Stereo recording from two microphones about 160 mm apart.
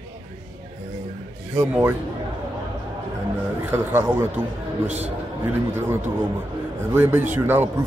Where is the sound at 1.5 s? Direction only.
10° right (ahead or behind).